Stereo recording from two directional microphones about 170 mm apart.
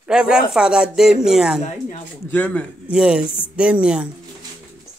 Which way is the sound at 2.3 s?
10° left (ahead or behind).